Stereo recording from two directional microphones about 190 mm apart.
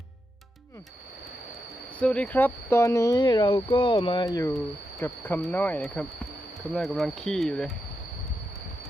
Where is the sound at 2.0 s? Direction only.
5° left (ahead or behind).